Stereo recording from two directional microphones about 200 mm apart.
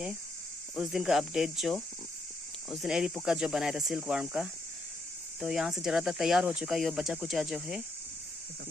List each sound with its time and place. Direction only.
0.7 s speech: centre (ahead or behind)